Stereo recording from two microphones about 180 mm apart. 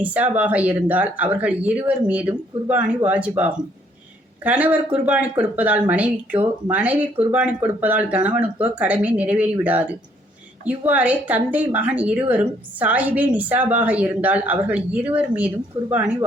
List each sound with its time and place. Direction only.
0.0 s a woman's voice: 10° right (ahead or behind)